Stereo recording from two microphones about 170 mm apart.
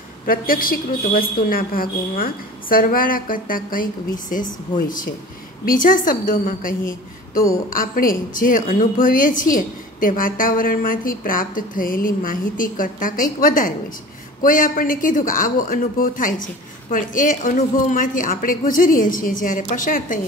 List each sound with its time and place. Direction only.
0.3 s a woman's voice: 60° left (ahead or behind)